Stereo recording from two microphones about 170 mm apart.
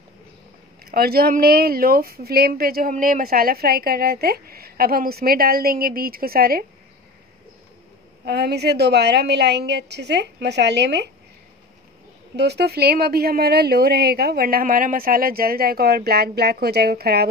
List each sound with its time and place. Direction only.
0.9 s a woman's voice: 60° right (ahead or behind)
8.3 s a woman's voice: 70° right (ahead or behind)
12.4 s speech: 75° right (ahead or behind)